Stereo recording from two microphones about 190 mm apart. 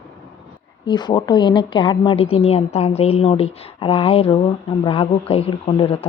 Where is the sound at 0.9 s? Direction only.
20° left (ahead or behind).